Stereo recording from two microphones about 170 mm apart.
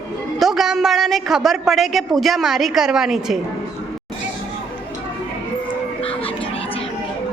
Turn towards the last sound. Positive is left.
turn(degrees=35)  # may be behind; listen again after turning